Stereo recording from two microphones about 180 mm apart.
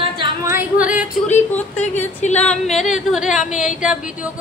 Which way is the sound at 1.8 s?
40° left (ahead or behind).